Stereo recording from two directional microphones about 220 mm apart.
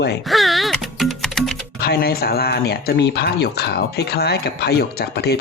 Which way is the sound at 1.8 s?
45° left (ahead or behind).